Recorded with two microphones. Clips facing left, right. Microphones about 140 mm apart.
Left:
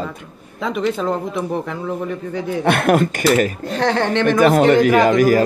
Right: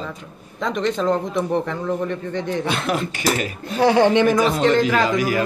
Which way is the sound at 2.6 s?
60° left (ahead or behind).